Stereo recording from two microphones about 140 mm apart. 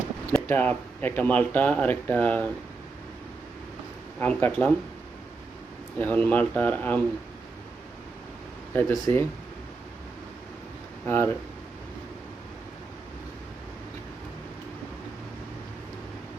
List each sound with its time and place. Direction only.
0.4 s speech: 10° left (ahead or behind)
4.2 s speech: 15° left (ahead or behind)
6.0 s speech: 10° left (ahead or behind)
8.7 s speech: 20° left (ahead or behind)
11.0 s speech: 15° left (ahead or behind)